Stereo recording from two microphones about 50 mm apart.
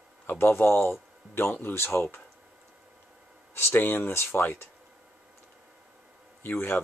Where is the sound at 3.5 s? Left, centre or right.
Left.